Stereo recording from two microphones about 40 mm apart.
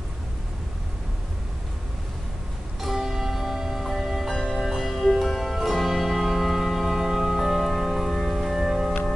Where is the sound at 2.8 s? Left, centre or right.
Centre.